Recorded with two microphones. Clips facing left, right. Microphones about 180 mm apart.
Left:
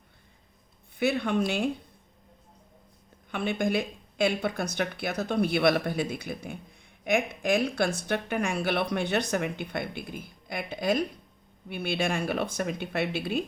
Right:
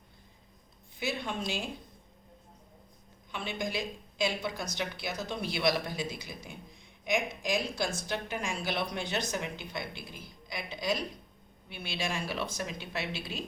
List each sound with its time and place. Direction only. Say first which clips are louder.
0.9 s speech: left 9 dB; 60° left (ahead or behind)
3.3 s speech: left 8 dB; 55° left (ahead or behind)